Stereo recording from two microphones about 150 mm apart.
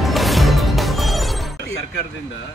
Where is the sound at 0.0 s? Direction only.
Centre (ahead or behind).